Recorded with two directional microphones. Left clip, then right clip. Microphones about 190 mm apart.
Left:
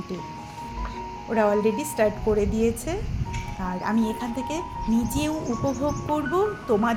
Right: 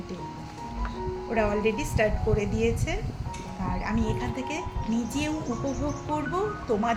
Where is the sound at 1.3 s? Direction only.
25° left (ahead or behind).